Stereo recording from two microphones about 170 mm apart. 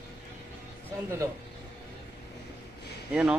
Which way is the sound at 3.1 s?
5° right (ahead or behind).